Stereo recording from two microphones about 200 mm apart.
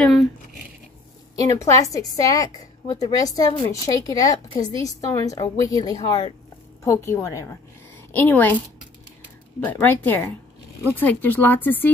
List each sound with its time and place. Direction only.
1.4 s a woman's voice: 15° left (ahead or behind)
9.7 s a woman's voice: 10° left (ahead or behind)